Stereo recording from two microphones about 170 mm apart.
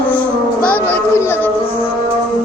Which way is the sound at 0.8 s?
10° left (ahead or behind).